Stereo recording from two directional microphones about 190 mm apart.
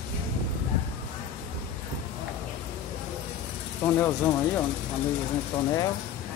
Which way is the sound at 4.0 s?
10° left (ahead or behind).